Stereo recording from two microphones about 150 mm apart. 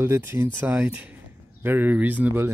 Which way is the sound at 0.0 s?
15° right (ahead or behind).